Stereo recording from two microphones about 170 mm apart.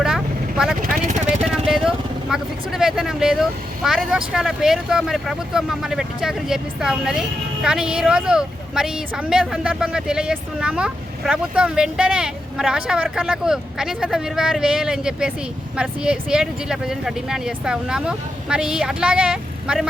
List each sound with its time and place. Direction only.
0.0 s vehicle: 5° right (ahead or behind)
0.9 s vehicle: 45° right (ahead or behind)
1.5 s vehicle: centre (ahead or behind)
3.8 s speech: centre (ahead or behind)